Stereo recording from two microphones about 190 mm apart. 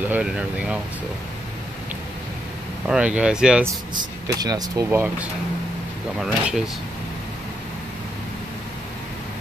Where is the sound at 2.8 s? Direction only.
5° right (ahead or behind).